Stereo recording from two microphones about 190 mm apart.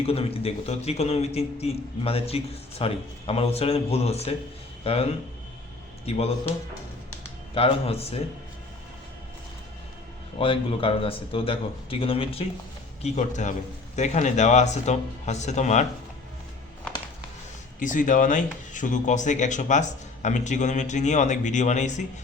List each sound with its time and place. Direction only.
0.0 s a man's voice: 30° left (ahead or behind)
7.5 s a man's voice: 30° left (ahead or behind)
10.3 s a man's voice: 30° left (ahead or behind)
17.7 s a man's voice: 45° left (ahead or behind)